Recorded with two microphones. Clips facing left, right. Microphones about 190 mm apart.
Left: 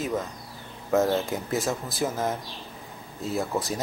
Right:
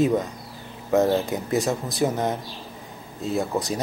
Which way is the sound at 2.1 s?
20° right (ahead or behind).